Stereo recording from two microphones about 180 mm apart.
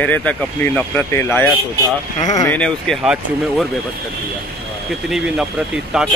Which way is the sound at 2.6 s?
5° left (ahead or behind).